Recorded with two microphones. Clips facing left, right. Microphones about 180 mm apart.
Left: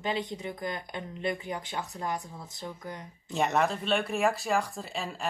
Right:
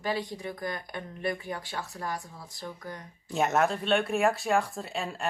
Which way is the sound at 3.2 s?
Centre (ahead or behind).